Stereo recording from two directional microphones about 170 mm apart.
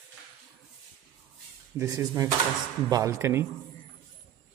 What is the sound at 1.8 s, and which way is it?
Speech, 20° right (ahead or behind).